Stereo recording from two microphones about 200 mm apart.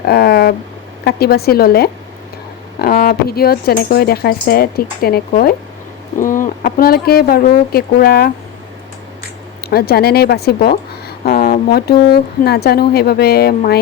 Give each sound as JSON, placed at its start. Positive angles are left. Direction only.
{"t": 0.0, "sound": "speech", "side_deg": 55}
{"t": 9.6, "sound": "speech", "side_deg": 50}